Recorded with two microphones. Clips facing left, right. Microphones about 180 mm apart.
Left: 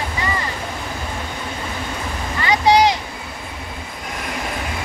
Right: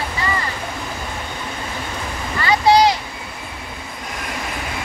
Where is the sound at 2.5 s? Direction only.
20° left (ahead or behind).